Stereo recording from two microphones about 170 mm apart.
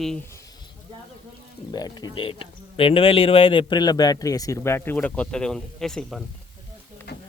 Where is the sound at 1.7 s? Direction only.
25° left (ahead or behind); by 6.2 s centre (ahead or behind).